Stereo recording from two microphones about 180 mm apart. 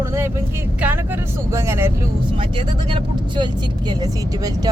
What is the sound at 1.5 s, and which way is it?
Speech, 15° right (ahead or behind).